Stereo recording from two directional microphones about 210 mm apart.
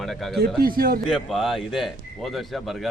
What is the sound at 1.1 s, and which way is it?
Speech, centre (ahead or behind).